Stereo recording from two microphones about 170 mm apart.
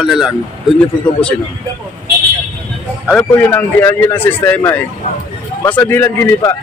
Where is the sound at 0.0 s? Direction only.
Centre (ahead or behind).